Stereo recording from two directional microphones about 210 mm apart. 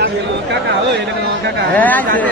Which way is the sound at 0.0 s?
55° right (ahead or behind).